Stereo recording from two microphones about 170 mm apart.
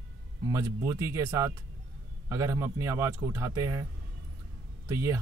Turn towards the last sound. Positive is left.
turn(degrees=-15)  # may be behind; listen again after turning